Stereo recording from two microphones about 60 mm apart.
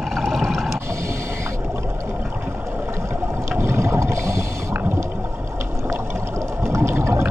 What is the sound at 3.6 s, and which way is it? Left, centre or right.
Boat, right.